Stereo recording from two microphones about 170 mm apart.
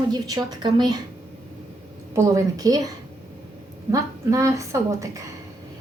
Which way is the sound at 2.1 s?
15° right (ahead or behind).